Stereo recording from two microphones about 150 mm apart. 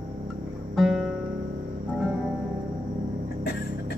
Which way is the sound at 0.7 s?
Centre (ahead or behind).